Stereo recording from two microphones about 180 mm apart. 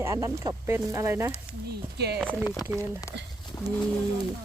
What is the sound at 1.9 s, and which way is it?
Speech, 65° right (ahead or behind).